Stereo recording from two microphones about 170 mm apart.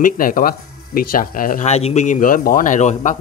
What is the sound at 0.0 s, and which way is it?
Speech, 55° left (ahead or behind).